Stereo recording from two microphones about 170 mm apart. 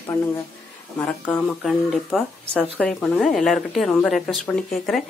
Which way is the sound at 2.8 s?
5° left (ahead or behind).